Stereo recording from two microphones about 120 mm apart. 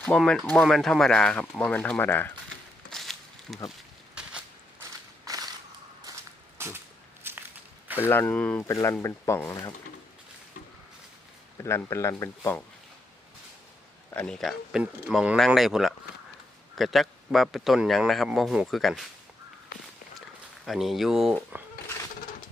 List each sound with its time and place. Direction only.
0.2 s a man's voice: 5° right (ahead or behind); by 2.3 s 15° left (ahead or behind)
2.9 s a sound: centre (ahead or behind)
4.8 s walk: 30° right (ahead or behind)
6.6 s cap gun: 20° right (ahead or behind)
7.3 s walk: 20° right (ahead or behind)
7.9 s speech: 20° left (ahead or behind)
8.6 s speech: 25° left (ahead or behind)
11.5 s speech: 25° left (ahead or behind)
14.3 s a man's voice: centre (ahead or behind)
20.7 s a man's voice: centre (ahead or behind)